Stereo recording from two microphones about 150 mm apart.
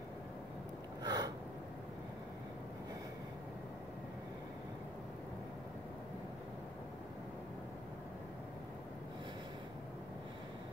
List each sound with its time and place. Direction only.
1.0 s gasp: 25° right (ahead or behind)